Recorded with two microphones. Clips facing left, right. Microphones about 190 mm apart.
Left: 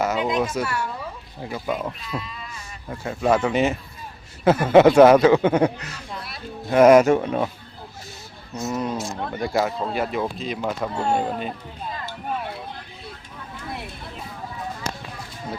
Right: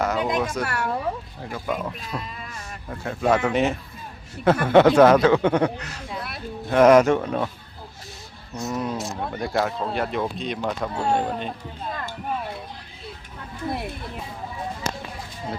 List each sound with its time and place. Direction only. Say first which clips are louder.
0.0 s speech: left 1 dB; 5° left (ahead or behind)
0.6 s speech: even; 60° right (ahead or behind)
1.4 s speech: left 1 dB; 10° left (ahead or behind)
6.7 s speech: left 2 dB; 5° left (ahead or behind)
8.5 s speech: left 1 dB; centre (ahead or behind)